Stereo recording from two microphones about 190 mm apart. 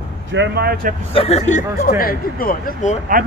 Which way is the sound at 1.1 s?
30° left (ahead or behind).